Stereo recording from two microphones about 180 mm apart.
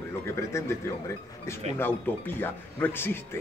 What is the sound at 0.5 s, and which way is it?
Speech, 15° left (ahead or behind).